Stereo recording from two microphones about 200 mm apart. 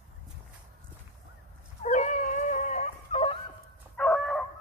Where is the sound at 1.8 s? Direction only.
40° left (ahead or behind).